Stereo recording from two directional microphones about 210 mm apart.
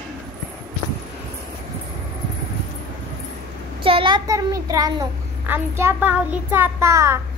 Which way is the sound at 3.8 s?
25° right (ahead or behind).